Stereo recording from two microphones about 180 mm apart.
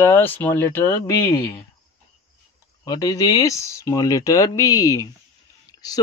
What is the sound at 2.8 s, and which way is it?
Speech, 20° left (ahead or behind).